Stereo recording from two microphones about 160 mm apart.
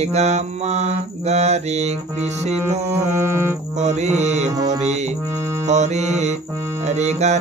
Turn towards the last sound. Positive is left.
turn(degrees=-45)  # may be behind; listen again after turning